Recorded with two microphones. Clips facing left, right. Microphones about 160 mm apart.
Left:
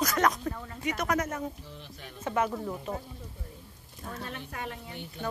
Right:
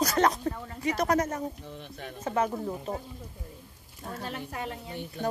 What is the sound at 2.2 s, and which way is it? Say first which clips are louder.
Speech: right 1 dB; 35° right (ahead or behind).